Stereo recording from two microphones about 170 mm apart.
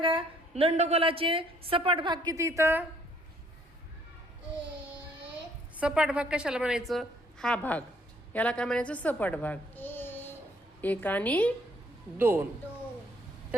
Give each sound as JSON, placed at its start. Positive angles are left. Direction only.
{"t": 0.0, "sound": "a woman's voice", "side_deg": -30}
{"t": 5.7, "sound": "a woman's voice", "side_deg": -5}
{"t": 12.1, "sound": "a man's voice", "side_deg": -10}